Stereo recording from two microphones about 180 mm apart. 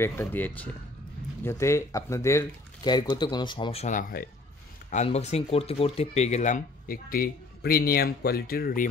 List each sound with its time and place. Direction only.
0.0 s speech: 10° left (ahead or behind); by 4.3 s 55° left (ahead or behind)
4.9 s speech: 35° left (ahead or behind); by 8.8 s 55° left (ahead or behind)